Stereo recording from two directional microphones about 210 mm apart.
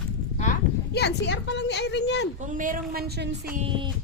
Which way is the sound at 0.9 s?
55° left (ahead or behind).